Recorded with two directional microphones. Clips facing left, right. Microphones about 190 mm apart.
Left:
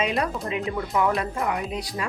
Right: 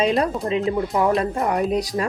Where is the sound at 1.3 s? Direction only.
40° right (ahead or behind).